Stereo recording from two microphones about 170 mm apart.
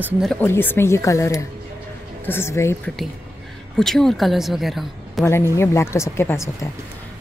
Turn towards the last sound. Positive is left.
turn(degrees=15)  # may be behind; listen again after turning